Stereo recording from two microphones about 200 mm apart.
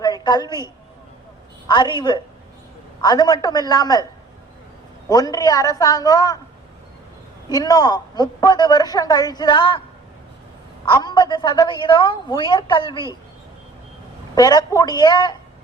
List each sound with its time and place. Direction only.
0.0 s a sound: 20° left (ahead or behind)
1.6 s a woman's voice: 20° left (ahead or behind)
5.0 s a woman's voice: 20° left (ahead or behind)
7.5 s a woman's voice: 20° left (ahead or behind)
10.8 s a woman's voice: 20° left (ahead or behind)
14.3 s a woman's voice: 20° left (ahead or behind)